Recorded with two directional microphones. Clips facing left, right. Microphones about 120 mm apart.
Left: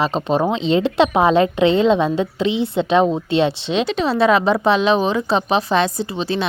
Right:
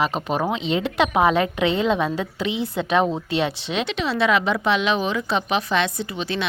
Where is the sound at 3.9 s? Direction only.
40° left (ahead or behind).